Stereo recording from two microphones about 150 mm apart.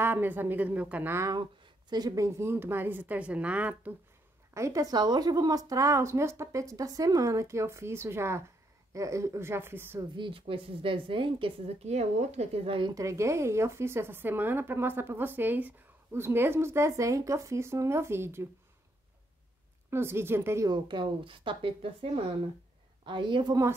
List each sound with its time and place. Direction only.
0.0 s a woman's voice: 15° right (ahead or behind)
4.6 s speech: 20° right (ahead or behind)
10.1 s speech: 35° right (ahead or behind)
12.9 s a woman's voice: 20° right (ahead or behind)
19.9 s a woman's voice: 15° right (ahead or behind)
20.7 s speech: 30° right (ahead or behind)